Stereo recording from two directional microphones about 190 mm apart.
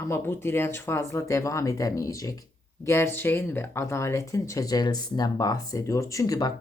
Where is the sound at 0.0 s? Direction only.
15° left (ahead or behind).